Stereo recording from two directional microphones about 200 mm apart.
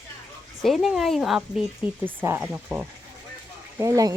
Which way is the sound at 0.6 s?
Centre (ahead or behind).